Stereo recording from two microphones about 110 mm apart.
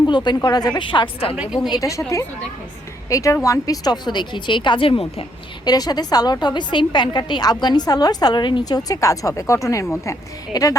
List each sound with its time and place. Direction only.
0.0 s a woman's voice: 40° left (ahead or behind)
0.8 s a woman's voice: 50° left (ahead or behind)
1.7 s a woman's voice: 30° left (ahead or behind); by 5.2 s 60° left (ahead or behind)
5.6 s a woman's voice: 35° left (ahead or behind)